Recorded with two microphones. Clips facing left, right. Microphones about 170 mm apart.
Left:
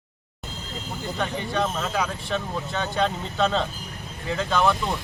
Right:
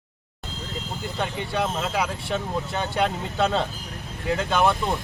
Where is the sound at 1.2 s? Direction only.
20° right (ahead or behind).